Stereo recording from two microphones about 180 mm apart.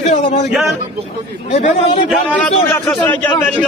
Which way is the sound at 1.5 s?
35° left (ahead or behind).